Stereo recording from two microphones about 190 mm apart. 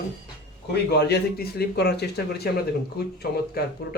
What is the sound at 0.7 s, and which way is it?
Speech, 60° left (ahead or behind).